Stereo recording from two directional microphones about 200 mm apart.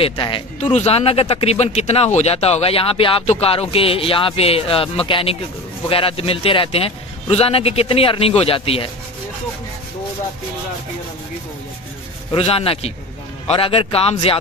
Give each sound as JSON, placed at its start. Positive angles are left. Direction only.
{"t": 0.0, "sound": "speech", "side_deg": 25}
{"t": 12.3, "sound": "speech", "side_deg": 30}